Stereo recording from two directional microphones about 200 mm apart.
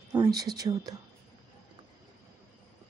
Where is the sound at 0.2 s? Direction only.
20° right (ahead or behind).